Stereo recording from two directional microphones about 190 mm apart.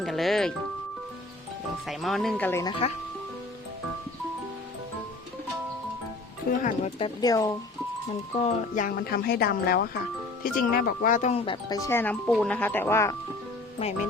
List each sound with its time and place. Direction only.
0.0 s music: centre (ahead or behind)
1.9 s speech: centre (ahead or behind)
2.5 s speech: 15° left (ahead or behind)
6.6 s speech: 40° left (ahead or behind)
7.0 s speech: 20° left (ahead or behind)
8.4 s speech: 40° left (ahead or behind); by 13.1 s 15° left (ahead or behind)